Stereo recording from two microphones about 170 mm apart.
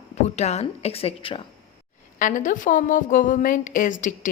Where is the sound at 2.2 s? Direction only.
50° left (ahead or behind).